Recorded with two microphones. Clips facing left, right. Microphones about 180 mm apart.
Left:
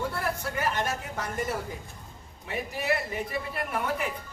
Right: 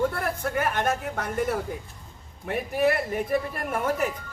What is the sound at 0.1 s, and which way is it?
A woman's voice, 55° right (ahead or behind).